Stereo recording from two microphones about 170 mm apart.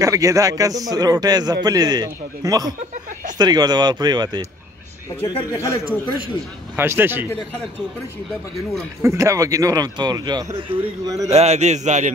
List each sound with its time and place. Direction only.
0.0 s a man's voice: 20° right (ahead or behind)
5.5 s a man's voice: 20° left (ahead or behind)
6.8 s speech: 10° right (ahead or behind)
9.0 s a man's voice: 20° right (ahead or behind); by 12.1 s 45° right (ahead or behind)